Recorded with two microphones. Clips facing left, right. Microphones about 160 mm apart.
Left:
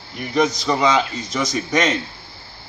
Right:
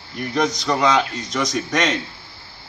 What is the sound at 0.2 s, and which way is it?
Speech, 5° left (ahead or behind).